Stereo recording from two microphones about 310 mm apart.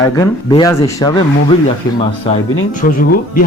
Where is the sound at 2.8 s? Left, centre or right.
Left.